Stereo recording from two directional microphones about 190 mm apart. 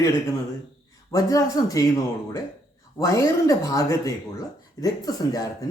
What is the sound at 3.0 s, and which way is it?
A man's voice, 15° left (ahead or behind).